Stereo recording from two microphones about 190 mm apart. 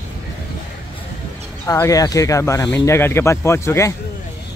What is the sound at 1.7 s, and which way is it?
Speech, 15° left (ahead or behind).